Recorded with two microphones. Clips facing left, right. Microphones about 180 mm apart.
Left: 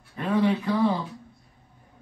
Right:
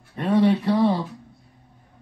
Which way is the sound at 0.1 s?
35° right (ahead or behind).